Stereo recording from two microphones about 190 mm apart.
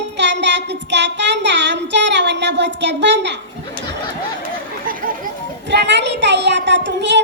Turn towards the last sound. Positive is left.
turn(degrees=-65)  # may be behind; listen again after turning